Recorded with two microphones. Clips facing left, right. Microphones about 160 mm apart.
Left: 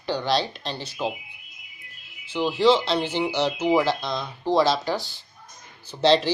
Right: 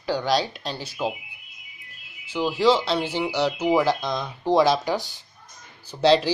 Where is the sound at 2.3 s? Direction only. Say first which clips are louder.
Left 1 dB; 5° right (ahead or behind).